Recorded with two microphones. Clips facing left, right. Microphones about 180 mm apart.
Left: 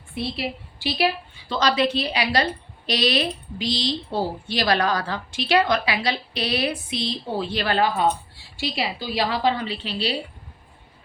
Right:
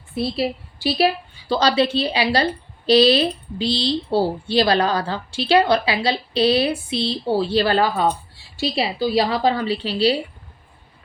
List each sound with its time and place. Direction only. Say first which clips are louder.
0.1 s a woman's voice: right 6 dB; 35° right (ahead or behind)